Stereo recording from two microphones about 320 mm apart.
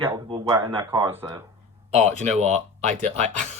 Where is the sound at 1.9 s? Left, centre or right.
Right.